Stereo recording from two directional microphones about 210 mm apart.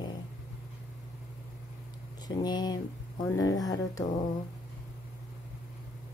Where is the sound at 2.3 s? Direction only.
20° left (ahead or behind).